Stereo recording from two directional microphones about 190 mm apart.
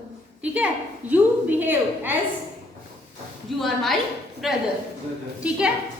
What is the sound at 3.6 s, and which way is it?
A woman's voice, centre (ahead or behind).